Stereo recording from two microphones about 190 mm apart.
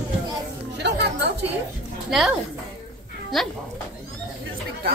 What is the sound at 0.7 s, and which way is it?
Chatter, 60° right (ahead or behind).